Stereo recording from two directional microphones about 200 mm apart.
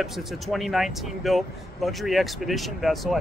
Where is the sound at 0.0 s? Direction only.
Centre (ahead or behind).